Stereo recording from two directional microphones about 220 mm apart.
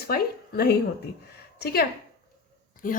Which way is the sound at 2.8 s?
40° left (ahead or behind).